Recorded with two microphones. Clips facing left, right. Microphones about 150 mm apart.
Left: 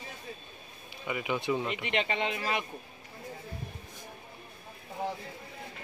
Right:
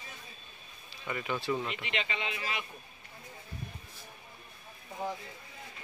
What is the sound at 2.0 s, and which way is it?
Speech, 50° left (ahead or behind).